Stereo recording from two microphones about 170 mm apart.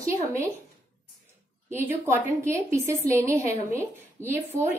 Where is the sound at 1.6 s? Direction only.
15° right (ahead or behind).